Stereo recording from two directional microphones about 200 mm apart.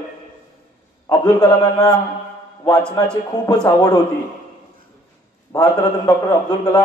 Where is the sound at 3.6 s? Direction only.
20° left (ahead or behind).